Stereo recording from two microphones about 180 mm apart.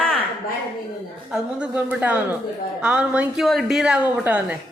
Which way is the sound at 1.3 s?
5° right (ahead or behind).